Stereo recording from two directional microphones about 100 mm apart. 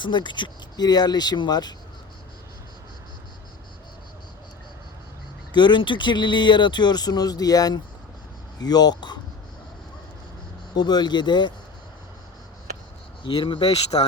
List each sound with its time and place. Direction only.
0.0 s speech: 50° left (ahead or behind)
5.5 s speech: 50° left (ahead or behind)
10.8 s speech: 45° left (ahead or behind)
13.2 s speech: 55° left (ahead or behind)